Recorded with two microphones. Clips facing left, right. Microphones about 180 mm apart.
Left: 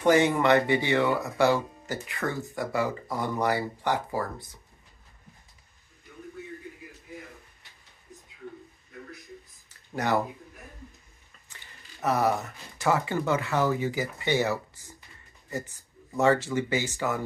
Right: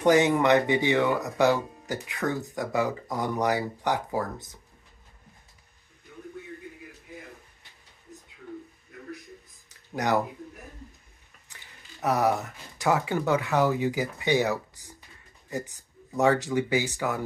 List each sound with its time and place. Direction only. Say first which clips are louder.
0.0 s speech: right 1 dB; 15° right (ahead or behind)
9.9 s speech: right 1 dB; 15° right (ahead or behind)
12.0 s speech: right 1 dB; 15° right (ahead or behind)